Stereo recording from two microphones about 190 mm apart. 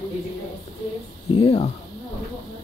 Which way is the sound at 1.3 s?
30° left (ahead or behind).